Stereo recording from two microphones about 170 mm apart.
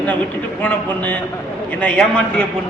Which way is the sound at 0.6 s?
10° left (ahead or behind).